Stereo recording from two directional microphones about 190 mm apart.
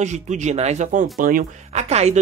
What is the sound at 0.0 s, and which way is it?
Speech, 40° right (ahead or behind).